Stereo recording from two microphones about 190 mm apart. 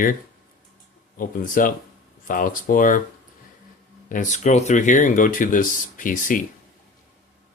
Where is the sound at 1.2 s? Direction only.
45° left (ahead or behind).